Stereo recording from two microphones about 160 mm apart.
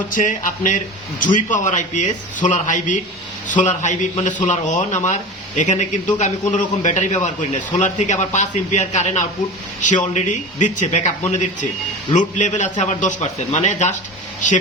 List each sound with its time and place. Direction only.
0.1 s a man's voice: 55° left (ahead or behind)
12.4 s a man's voice: 50° left (ahead or behind)